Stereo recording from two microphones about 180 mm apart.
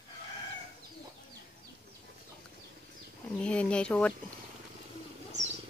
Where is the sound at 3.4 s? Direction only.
5° left (ahead or behind).